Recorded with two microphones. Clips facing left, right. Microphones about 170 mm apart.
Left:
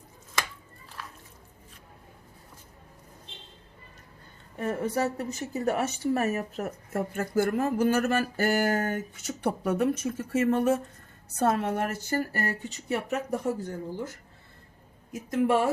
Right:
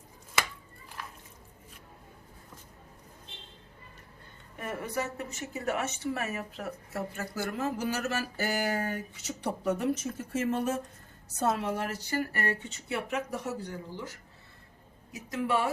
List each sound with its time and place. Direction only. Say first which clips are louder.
4.5 s a woman's voice: left 6 dB; 30° left (ahead or behind); by 14.1 s 50° left (ahead or behind)
15.1 s a woman's voice: left 6 dB; 50° left (ahead or behind)